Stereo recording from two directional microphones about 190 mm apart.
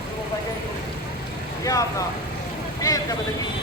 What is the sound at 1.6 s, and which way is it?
Speech, 15° left (ahead or behind).